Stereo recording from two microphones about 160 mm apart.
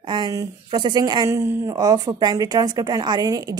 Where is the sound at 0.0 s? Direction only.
30° right (ahead or behind).